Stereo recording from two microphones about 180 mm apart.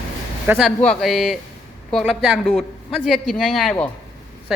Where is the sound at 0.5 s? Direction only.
Centre (ahead or behind).